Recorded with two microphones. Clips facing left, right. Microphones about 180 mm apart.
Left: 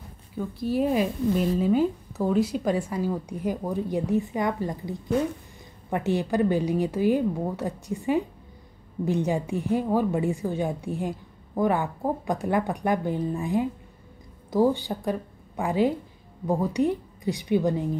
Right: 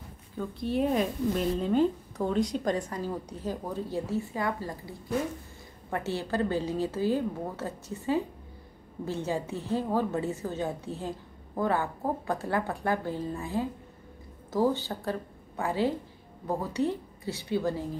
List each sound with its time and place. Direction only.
0.4 s a woman's voice: 5° left (ahead or behind)